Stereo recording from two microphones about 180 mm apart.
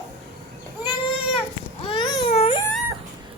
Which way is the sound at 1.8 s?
25° left (ahead or behind).